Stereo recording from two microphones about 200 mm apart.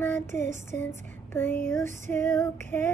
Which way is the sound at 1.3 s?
10° left (ahead or behind).